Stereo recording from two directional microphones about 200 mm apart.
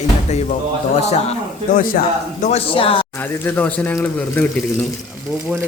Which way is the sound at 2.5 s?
30° left (ahead or behind).